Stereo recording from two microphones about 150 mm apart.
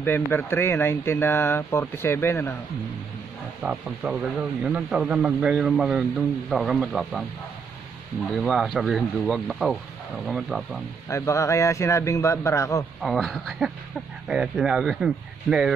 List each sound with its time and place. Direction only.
0.0 s speech: 15° left (ahead or behind)
3.6 s a man's voice: 5° right (ahead or behind)
8.5 s a man's voice: centre (ahead or behind)
11.1 s a man's voice: 20° left (ahead or behind)
13.0 s a man's voice: centre (ahead or behind)